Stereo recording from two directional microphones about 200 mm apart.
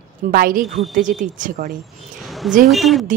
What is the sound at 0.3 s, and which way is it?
A woman's voice, 45° right (ahead or behind).